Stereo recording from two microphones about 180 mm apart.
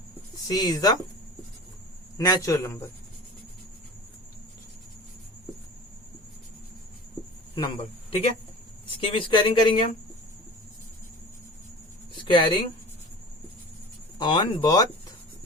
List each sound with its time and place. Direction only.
0.5 s speech: 20° left (ahead or behind)
2.1 s a man's voice: 20° left (ahead or behind)
7.5 s a man's voice: 30° left (ahead or behind)
12.1 s a sound: 25° left (ahead or behind)
14.2 s speech: 25° left (ahead or behind)